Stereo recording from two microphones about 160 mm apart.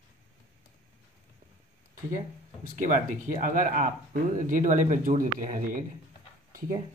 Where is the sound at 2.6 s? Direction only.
55° right (ahead or behind).